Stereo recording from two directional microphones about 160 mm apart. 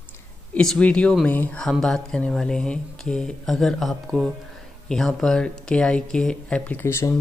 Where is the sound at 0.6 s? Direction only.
5° left (ahead or behind).